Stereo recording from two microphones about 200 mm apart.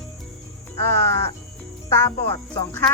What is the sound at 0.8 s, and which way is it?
Music, 10° left (ahead or behind).